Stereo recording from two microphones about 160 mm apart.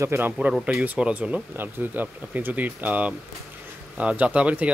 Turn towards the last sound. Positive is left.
turn(degrees=-10)  # may be behind; listen again after turning